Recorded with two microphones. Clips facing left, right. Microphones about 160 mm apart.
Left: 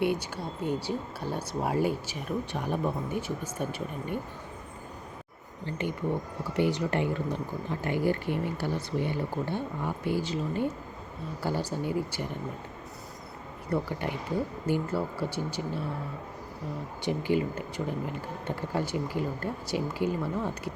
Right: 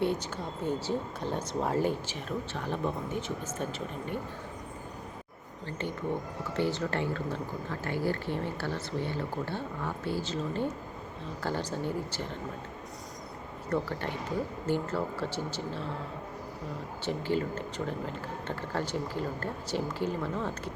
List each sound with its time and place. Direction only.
0.0 s speech: 10° left (ahead or behind)
5.6 s speech: 15° left (ahead or behind)
13.7 s speech: 10° left (ahead or behind)
17.1 s speech: 15° left (ahead or behind)